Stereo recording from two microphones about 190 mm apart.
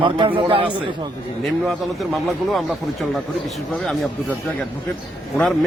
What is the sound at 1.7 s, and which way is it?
A man's voice, centre (ahead or behind).